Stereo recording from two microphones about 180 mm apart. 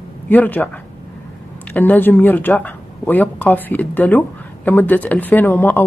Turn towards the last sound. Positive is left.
turn(degrees=10)  # may be behind; listen again after turning